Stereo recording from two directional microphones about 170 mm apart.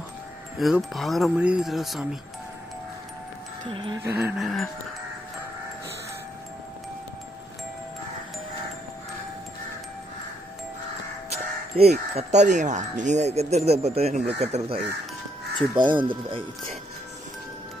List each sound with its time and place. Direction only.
0.6 s speech: centre (ahead or behind)
3.7 s speech: 30° right (ahead or behind)
4.0 s music: 10° right (ahead or behind)
4.4 s speech: centre (ahead or behind)
11.2 s speech: 40° right (ahead or behind)
15.9 s speech: 30° right (ahead or behind)